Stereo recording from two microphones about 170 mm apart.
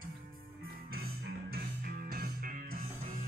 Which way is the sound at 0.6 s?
65° right (ahead or behind).